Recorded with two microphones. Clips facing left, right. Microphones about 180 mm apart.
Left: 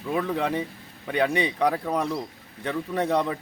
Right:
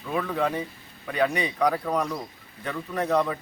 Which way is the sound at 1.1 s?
30° left (ahead or behind).